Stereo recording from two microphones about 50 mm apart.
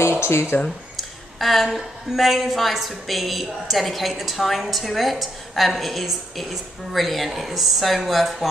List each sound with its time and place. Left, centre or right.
0.0 s speech: left
0.9 s a woman's voice: centre